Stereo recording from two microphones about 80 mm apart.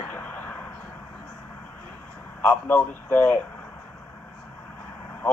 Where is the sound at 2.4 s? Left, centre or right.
Left.